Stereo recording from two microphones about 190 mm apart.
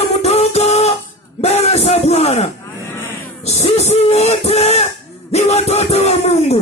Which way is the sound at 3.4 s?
35° left (ahead or behind).